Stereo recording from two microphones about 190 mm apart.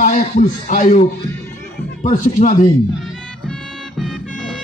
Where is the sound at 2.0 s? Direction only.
40° left (ahead or behind).